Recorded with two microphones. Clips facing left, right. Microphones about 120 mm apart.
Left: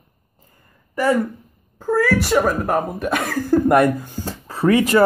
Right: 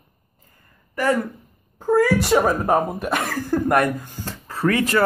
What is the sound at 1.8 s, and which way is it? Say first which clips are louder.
Speech: right 1 dB; 15° right (ahead or behind).